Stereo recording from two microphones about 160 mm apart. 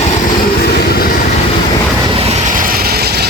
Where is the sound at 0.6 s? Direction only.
70° left (ahead or behind).